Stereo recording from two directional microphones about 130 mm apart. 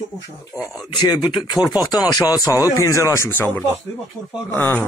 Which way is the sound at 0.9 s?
30° left (ahead or behind).